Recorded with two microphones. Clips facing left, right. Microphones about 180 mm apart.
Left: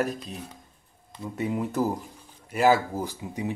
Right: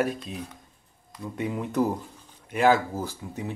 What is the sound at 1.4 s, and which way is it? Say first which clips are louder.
Speech: even; 5° left (ahead or behind).